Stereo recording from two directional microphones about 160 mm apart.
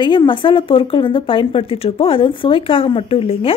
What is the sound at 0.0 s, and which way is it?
A woman's voice, 30° left (ahead or behind).